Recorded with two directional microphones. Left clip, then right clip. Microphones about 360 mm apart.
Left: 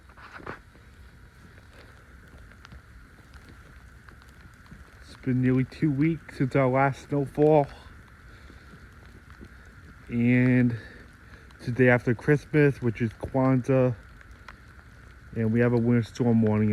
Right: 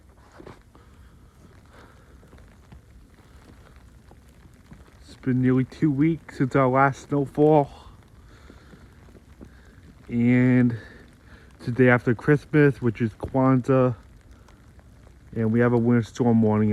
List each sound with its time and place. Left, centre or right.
5.2 s speech: right
10.1 s speech: right
15.4 s speech: right